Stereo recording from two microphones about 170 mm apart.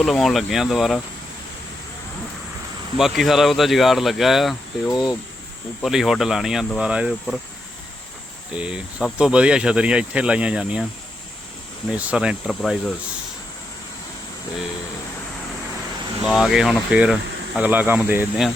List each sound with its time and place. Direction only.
0.0 s speech: centre (ahead or behind)
3.0 s speech: centre (ahead or behind)
4.9 s speech: 25° left (ahead or behind)
5.8 s speech: centre (ahead or behind)
8.5 s speech: 5° right (ahead or behind)
11.9 s speech: 5° right (ahead or behind)
16.2 s speech: centre (ahead or behind)